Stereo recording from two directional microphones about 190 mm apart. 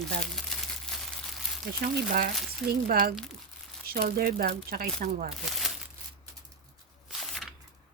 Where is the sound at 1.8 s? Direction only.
50° right (ahead or behind).